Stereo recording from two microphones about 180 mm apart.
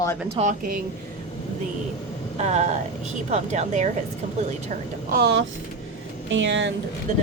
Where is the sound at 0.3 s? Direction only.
45° right (ahead or behind).